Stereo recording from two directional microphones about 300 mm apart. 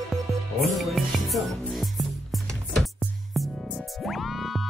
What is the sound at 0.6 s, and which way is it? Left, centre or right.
Music, centre.